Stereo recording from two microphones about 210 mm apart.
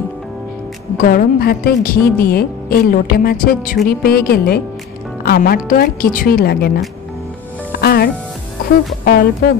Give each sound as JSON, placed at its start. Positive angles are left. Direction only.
{"t": 1.0, "sound": "a woman's voice", "side_deg": 45}
{"t": 7.8, "sound": "music", "side_deg": 45}
{"t": 9.0, "sound": "a woman's voice", "side_deg": 50}